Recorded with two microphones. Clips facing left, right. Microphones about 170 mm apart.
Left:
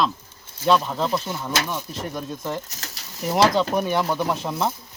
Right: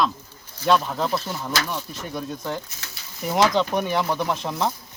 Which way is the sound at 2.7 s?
40° left (ahead or behind).